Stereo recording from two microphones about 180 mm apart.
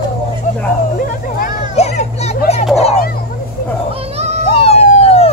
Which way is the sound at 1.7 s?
35° left (ahead or behind).